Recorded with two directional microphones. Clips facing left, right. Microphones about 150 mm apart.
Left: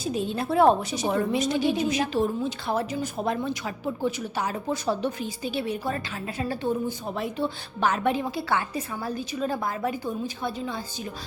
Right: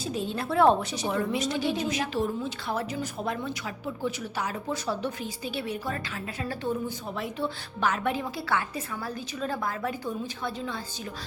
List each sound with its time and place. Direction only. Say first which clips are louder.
0.0 s a woman's voice: left 3 dB; 15° left (ahead or behind)
1.0 s a woman's voice: left 4 dB; 35° left (ahead or behind)
1.4 s a woman's voice: left 4 dB; 15° left (ahead or behind)
7.8 s a woman's voice: left 3 dB; 25° left (ahead or behind)